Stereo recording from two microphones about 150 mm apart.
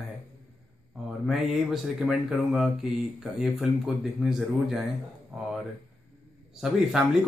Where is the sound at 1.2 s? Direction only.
5° right (ahead or behind).